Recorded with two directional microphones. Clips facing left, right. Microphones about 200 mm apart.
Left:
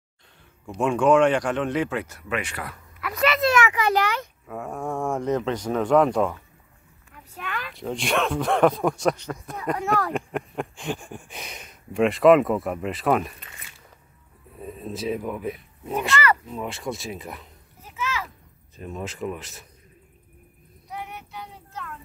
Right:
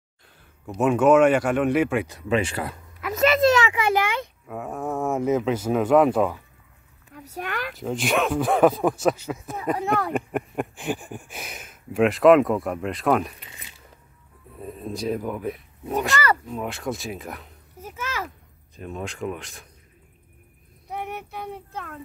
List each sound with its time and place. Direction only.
0.7 s speech: 5° right (ahead or behind)
2.2 s a child's voice: 30° right (ahead or behind)
4.5 s speech: centre (ahead or behind)
7.3 s speech: 40° right (ahead or behind)
7.7 s speech: centre (ahead or behind)
14.6 s speech: centre (ahead or behind)
17.8 s a sound: 50° right (ahead or behind)
18.8 s speech: centre (ahead or behind)
20.9 s child singing: 55° right (ahead or behind)